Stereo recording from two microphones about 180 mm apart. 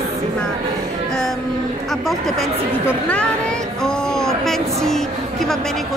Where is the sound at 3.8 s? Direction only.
5° left (ahead or behind).